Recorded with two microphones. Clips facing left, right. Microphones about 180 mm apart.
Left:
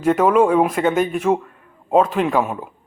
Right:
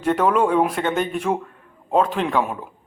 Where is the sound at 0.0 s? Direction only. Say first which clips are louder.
Left 4 dB; 5° left (ahead or behind).